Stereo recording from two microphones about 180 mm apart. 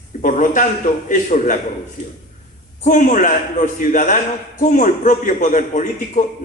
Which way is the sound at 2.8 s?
45° left (ahead or behind).